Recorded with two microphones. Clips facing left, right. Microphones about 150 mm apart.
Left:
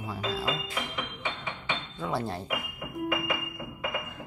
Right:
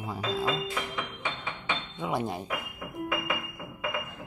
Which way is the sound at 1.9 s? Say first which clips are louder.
Right 1 dB; 20° right (ahead or behind).